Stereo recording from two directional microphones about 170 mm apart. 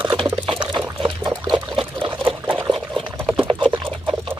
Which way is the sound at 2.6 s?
Centre (ahead or behind).